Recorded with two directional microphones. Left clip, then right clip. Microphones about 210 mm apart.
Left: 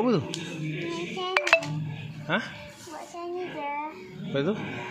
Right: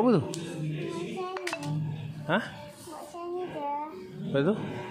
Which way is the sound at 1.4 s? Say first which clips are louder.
Left 14 dB; 40° left (ahead or behind).